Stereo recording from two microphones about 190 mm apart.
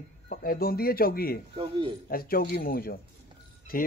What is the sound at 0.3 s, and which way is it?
A man's voice, 50° left (ahead or behind).